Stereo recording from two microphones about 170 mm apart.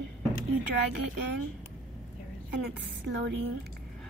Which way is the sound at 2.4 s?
80° right.